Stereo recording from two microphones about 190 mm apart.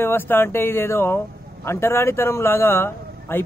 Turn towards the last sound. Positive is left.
turn(degrees=10)  # may be behind; listen again after turning